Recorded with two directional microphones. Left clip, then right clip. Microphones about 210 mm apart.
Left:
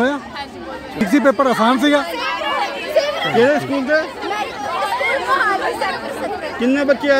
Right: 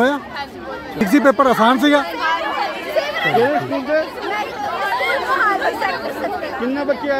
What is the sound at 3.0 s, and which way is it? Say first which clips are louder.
Chatter: left 1 dB; 10° left (ahead or behind).